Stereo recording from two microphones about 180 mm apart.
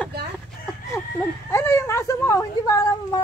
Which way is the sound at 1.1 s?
15° left (ahead or behind).